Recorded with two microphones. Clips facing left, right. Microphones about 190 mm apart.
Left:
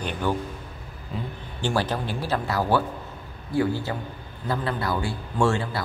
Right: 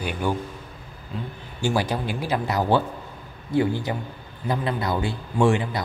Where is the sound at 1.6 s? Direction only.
10° right (ahead or behind).